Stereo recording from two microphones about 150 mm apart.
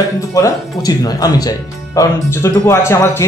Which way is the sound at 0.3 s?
25° left (ahead or behind).